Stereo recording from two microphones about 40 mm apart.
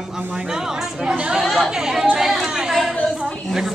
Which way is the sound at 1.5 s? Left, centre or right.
Centre.